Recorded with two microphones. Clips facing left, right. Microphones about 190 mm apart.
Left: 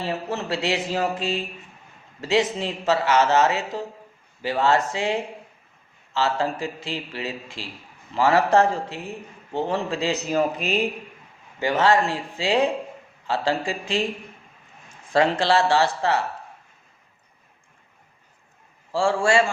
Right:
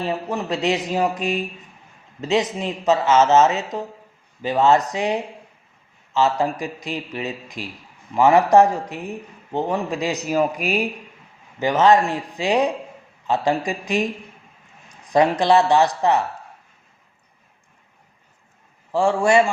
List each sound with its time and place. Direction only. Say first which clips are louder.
0.0 s a man's voice: right 3 dB; 15° right (ahead or behind)
18.9 s speech: right 3 dB; 20° right (ahead or behind)